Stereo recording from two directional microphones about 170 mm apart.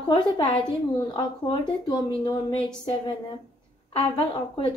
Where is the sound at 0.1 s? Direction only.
30° left (ahead or behind).